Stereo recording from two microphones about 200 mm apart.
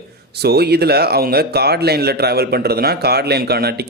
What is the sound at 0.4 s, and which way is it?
A man's voice, 55° right (ahead or behind).